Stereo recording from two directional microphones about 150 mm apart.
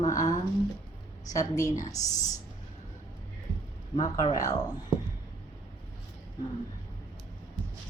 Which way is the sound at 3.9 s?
25° left (ahead or behind).